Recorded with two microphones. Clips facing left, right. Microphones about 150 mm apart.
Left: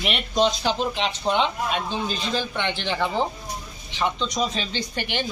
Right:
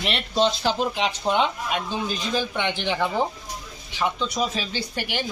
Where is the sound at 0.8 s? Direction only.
10° right (ahead or behind).